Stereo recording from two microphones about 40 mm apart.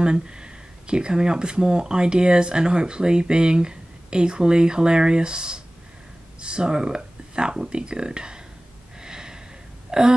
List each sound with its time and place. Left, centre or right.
0.0 s speech: right
9.0 s snort: centre
9.8 s a sound: centre